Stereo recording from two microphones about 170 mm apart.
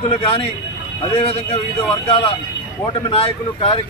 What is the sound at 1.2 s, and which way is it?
Speech, 35° left (ahead or behind).